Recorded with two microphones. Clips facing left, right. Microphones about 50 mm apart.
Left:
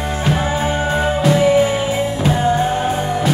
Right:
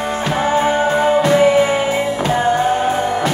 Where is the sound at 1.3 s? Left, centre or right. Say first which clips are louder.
Left 2 dB; right.